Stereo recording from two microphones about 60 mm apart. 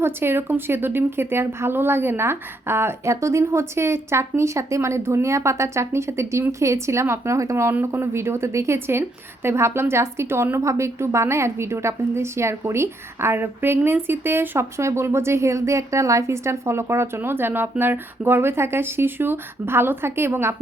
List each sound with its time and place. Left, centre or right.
0.0 s a woman's voice: right
10.6 s a woman's voice: right
14.8 s a woman's voice: right